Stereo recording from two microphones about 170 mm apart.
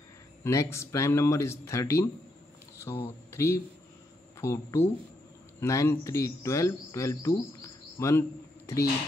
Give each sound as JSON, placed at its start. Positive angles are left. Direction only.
{"t": 0.4, "sound": "speech", "side_deg": 15}